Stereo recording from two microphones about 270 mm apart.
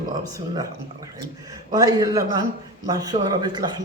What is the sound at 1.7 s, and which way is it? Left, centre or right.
Speech, centre.